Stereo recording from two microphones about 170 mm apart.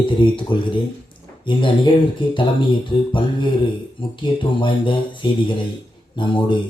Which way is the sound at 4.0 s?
30° left (ahead or behind).